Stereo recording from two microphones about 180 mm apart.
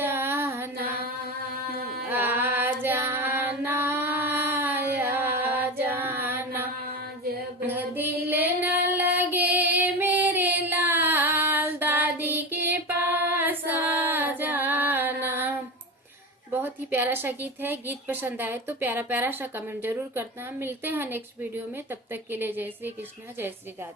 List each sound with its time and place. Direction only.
0.0 s music: 10° right (ahead or behind)
1.7 s carnatic music: 55° right (ahead or behind)
2.0 s female singing: 10° right (ahead or behind)
7.6 s female singing: 10° right (ahead or behind)
9.7 s child singing: 10° right (ahead or behind)
12.7 s female singing: 10° right (ahead or behind)
16.6 s a woman's voice: 10° right (ahead or behind)